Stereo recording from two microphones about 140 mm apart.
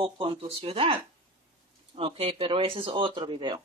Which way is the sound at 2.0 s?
40° right (ahead or behind).